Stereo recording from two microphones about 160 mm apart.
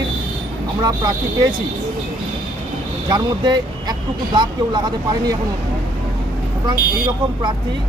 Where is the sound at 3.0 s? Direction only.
30° right (ahead or behind).